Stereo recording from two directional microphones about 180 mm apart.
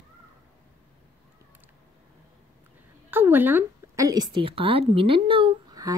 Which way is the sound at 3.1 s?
10° right (ahead or behind).